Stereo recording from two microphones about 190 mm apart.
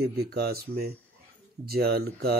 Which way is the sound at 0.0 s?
55° right (ahead or behind).